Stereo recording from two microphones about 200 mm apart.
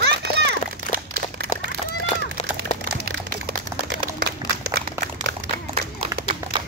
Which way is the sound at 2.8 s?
55° right (ahead or behind).